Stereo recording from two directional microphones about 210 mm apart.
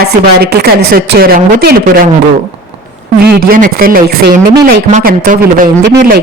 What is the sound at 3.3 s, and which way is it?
A woman's voice, 45° right (ahead or behind).